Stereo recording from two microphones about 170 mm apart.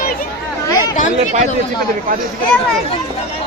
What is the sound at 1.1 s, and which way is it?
Speech, 40° right (ahead or behind).